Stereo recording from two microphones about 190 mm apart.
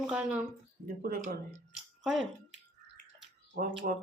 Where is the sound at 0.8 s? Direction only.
50° right (ahead or behind).